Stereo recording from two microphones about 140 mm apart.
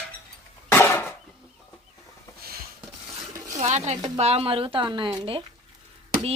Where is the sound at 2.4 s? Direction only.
90° right.